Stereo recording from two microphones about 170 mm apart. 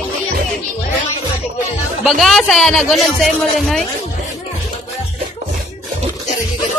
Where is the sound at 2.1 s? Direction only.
Centre (ahead or behind).